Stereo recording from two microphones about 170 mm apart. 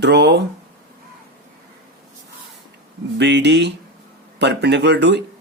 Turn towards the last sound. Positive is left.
turn(degrees=-90)